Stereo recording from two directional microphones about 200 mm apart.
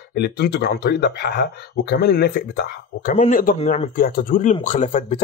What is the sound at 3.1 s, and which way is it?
Speech, 35° left (ahead or behind).